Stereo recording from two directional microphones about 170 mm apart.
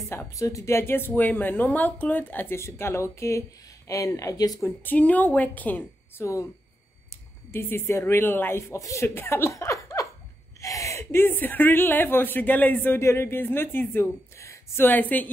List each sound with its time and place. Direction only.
0.1 s speech: 20° left (ahead or behind)
7.5 s speech: 15° left (ahead or behind)
10.0 s a sound: 20° left (ahead or behind)
10.6 s speech: 20° left (ahead or behind)